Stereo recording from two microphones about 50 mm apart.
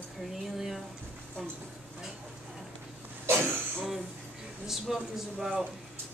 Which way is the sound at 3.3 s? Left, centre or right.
Right.